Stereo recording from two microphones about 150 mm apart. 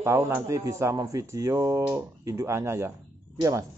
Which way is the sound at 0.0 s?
20° right (ahead or behind).